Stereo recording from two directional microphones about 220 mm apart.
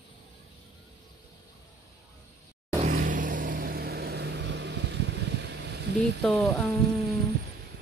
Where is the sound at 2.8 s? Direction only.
40° right (ahead or behind).